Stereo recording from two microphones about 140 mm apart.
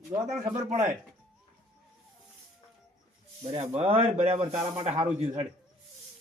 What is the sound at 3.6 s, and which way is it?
Speech, 45° right (ahead or behind).